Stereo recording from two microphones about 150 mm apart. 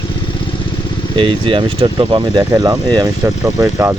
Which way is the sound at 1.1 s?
35° right (ahead or behind).